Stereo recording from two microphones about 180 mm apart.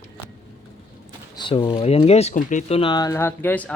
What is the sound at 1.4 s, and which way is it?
Speech, 25° left (ahead or behind).